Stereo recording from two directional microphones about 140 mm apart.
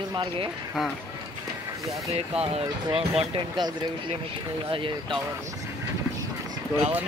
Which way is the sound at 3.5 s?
30° right (ahead or behind).